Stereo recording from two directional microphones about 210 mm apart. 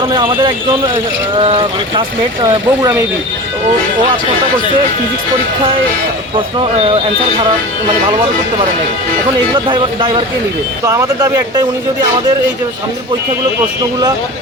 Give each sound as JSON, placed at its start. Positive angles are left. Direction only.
{"t": 0.1, "sound": "speech", "side_deg": -25}
{"t": 9.5, "sound": "speech", "side_deg": -20}